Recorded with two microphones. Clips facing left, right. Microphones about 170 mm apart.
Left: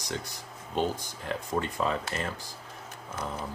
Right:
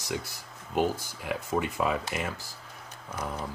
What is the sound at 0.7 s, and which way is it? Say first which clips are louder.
Speech: right 2 dB; 10° right (ahead or behind).